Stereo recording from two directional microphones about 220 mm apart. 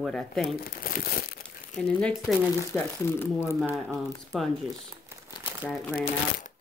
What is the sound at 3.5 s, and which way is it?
Speech, 5° right (ahead or behind).